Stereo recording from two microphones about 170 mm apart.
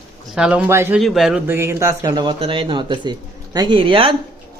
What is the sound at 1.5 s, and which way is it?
Speech, 15° right (ahead or behind).